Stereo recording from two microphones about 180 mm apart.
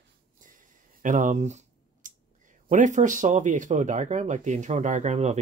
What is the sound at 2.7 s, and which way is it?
Speech, 45° right (ahead or behind).